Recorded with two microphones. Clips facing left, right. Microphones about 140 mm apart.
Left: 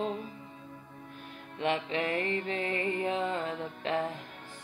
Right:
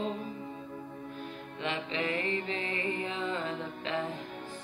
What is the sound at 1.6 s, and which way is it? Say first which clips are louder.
Speech: left 3 dB; 55° left (ahead or behind).